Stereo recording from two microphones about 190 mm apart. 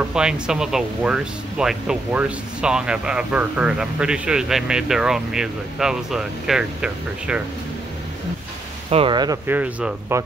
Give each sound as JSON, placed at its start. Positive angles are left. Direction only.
{"t": 0.0, "sound": "speech", "side_deg": -5}
{"t": 8.9, "sound": "speech", "side_deg": -25}
{"t": 9.5, "sound": "speech", "side_deg": -5}